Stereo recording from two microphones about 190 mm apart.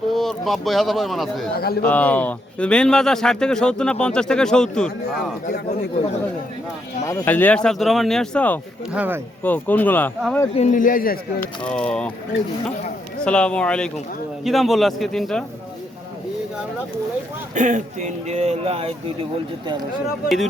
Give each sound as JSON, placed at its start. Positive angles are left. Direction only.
{"t": 0.1, "sound": "speech", "side_deg": 0}
{"t": 1.5, "sound": "a man's voice", "side_deg": 55}
{"t": 1.8, "sound": "speech", "side_deg": 10}
{"t": 5.1, "sound": "a man's voice", "side_deg": 60}
{"t": 7.1, "sound": "speech", "side_deg": 10}
{"t": 8.9, "sound": "speech", "side_deg": -10}
{"t": 9.4, "sound": "speech", "side_deg": 10}
{"t": 10.5, "sound": "speech", "side_deg": 40}
{"t": 11.7, "sound": "speech", "side_deg": 5}
{"t": 13.2, "sound": "speech", "side_deg": 5}
{"t": 17.5, "sound": "speech", "side_deg": -40}
{"t": 20.2, "sound": "speech", "side_deg": 0}